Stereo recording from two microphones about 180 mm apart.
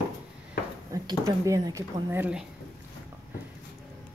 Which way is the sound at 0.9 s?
20° right (ahead or behind).